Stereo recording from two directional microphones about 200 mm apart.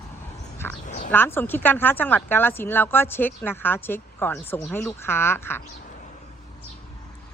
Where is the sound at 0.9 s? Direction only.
40° left (ahead or behind).